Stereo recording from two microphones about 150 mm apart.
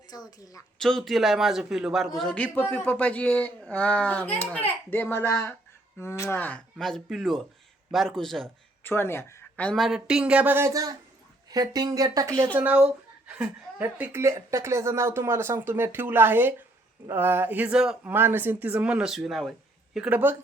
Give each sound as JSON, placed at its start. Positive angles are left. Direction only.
{"t": 0.1, "sound": "a woman's voice", "side_deg": 25}
{"t": 0.8, "sound": "a man's voice", "side_deg": 0}
{"t": 8.8, "sound": "speech", "side_deg": 15}
{"t": 12.5, "sound": "a woman's voice", "side_deg": -10}